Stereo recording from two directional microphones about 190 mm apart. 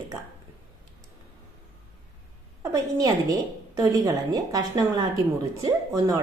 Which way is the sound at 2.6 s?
20° right (ahead or behind).